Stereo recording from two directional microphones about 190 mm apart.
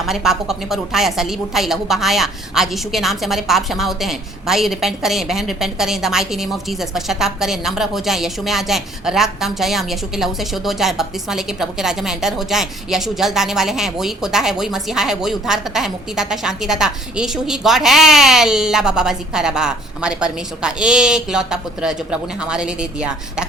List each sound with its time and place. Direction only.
0.0 s a woman's voice: centre (ahead or behind)